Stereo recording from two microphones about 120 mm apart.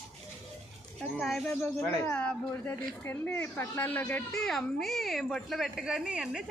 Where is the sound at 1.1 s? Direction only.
Centre (ahead or behind).